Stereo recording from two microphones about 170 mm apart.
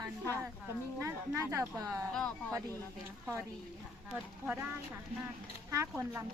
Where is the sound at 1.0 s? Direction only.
15° right (ahead or behind).